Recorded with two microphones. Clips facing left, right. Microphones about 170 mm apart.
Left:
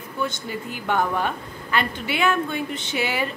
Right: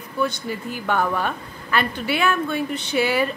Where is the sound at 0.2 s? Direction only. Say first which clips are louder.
Right 4 dB; 20° left (ahead or behind).